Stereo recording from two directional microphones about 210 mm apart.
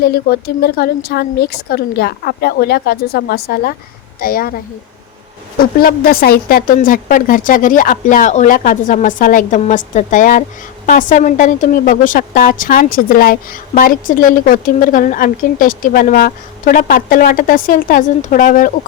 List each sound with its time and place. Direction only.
0.0 s speech: 50° left (ahead or behind)
5.5 s a woman's voice: 45° left (ahead or behind)